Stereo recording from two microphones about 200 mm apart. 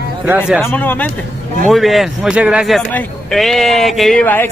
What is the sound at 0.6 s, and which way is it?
Speech, 10° left (ahead or behind).